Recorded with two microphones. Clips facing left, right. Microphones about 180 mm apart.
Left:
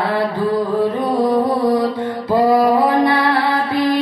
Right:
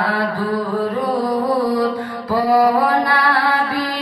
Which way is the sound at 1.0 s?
25° left (ahead or behind).